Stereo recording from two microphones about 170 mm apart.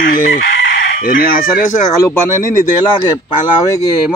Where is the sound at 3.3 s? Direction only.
25° left (ahead or behind).